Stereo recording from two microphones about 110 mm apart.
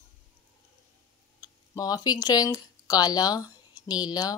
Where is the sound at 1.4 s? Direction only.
35° left (ahead or behind).